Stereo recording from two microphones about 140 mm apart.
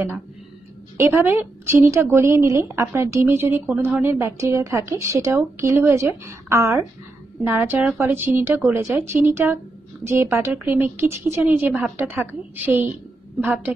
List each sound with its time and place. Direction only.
0.9 s a woman's voice: 20° right (ahead or behind)